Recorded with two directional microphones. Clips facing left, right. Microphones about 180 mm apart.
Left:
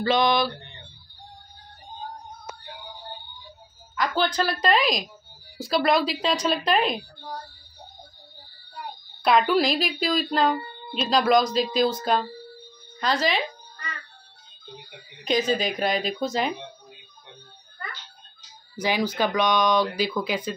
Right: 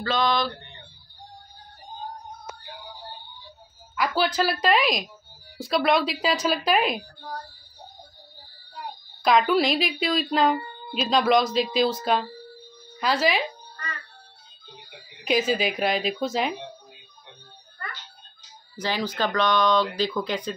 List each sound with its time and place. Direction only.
0.0 s speech: 15° left (ahead or behind)
3.9 s speech: 5° right (ahead or behind)
9.2 s speech: centre (ahead or behind)
15.2 s speech: 5° right (ahead or behind)
18.8 s speech: 10° left (ahead or behind)